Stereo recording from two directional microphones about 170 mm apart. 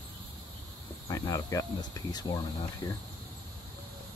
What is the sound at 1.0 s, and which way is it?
Speech, 20° left (ahead or behind).